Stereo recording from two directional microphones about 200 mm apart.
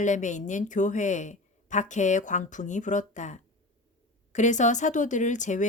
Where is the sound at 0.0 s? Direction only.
40° left (ahead or behind).